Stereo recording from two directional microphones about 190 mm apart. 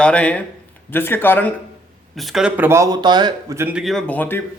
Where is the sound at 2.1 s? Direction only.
Centre (ahead or behind).